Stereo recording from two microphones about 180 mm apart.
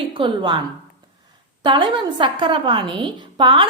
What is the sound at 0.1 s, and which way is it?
Speech, 25° right (ahead or behind).